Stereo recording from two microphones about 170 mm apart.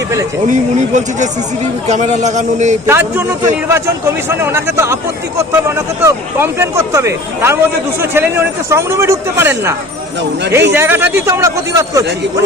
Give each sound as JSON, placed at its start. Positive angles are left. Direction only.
{"t": 0.4, "sound": "speech", "side_deg": -45}
{"t": 2.8, "sound": "speech", "side_deg": -15}